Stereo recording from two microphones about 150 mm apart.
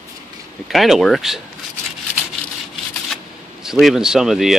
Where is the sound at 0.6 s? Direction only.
Centre (ahead or behind).